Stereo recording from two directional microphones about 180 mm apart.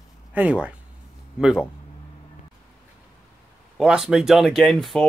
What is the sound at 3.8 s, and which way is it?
Speech, 5° right (ahead or behind).